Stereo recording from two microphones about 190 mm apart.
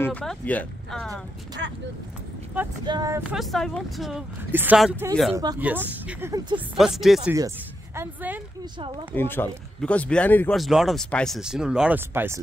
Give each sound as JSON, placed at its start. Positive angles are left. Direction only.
{"t": 0.0, "sound": "speech", "side_deg": 5}
{"t": 1.6, "sound": "speech", "side_deg": -65}
{"t": 2.8, "sound": "speech", "side_deg": -20}
{"t": 3.3, "sound": "speech", "side_deg": 0}
{"t": 5.3, "sound": "speech", "side_deg": -20}
{"t": 5.6, "sound": "speech", "side_deg": -10}
{"t": 6.3, "sound": "speech", "side_deg": -25}
{"t": 6.8, "sound": "speech", "side_deg": 0}
{"t": 7.3, "sound": "speech", "side_deg": -15}
{"t": 9.1, "sound": "speech", "side_deg": 10}